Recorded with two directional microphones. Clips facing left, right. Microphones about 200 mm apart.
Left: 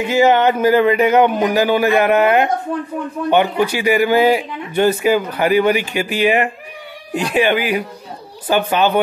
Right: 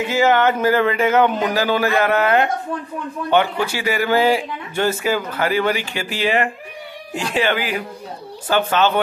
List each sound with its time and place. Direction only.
0.0 s speech: 20° left (ahead or behind)